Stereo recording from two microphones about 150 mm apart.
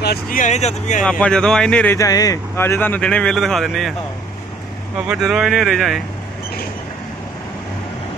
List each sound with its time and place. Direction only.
0.0 s speech: 80° left
0.5 s speech: 50° left (ahead or behind)
1.0 s speech: 5° left (ahead or behind)
2.0 s speech: 25° left (ahead or behind); by 3.9 s centre (ahead or behind)
5.0 s speech: 5° right (ahead or behind)